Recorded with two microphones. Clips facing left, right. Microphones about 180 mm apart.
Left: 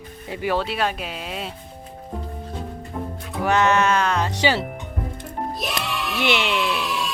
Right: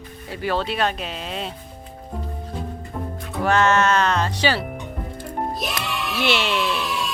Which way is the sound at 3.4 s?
15° left (ahead or behind).